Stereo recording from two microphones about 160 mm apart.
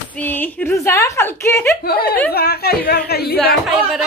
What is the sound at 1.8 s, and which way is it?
Speech, 75° left (ahead or behind).